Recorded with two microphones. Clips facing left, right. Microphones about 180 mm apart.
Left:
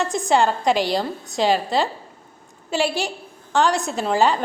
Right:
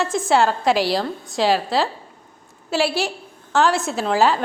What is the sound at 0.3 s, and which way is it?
A woman's voice, centre (ahead or behind).